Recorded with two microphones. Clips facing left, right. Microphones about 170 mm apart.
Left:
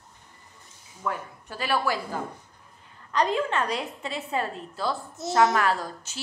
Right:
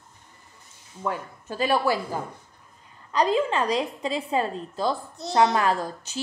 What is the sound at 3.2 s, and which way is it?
A woman's voice, 30° right (ahead or behind).